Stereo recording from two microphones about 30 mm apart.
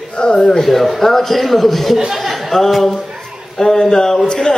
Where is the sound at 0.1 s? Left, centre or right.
Left.